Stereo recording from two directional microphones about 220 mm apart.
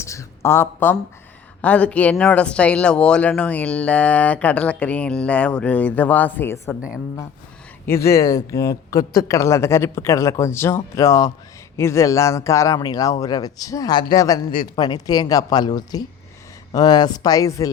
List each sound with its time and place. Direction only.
0.0 s speech: 15° left (ahead or behind)
7.9 s speech: 10° left (ahead or behind)